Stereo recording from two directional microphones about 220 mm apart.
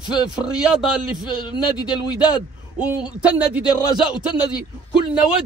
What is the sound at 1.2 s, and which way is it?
Speech, 20° left (ahead or behind).